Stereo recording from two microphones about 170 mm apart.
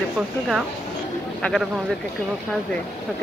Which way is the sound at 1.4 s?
Centre (ahead or behind).